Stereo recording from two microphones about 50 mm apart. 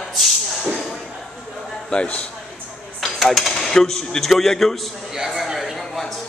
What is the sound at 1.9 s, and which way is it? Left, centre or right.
Speech, left.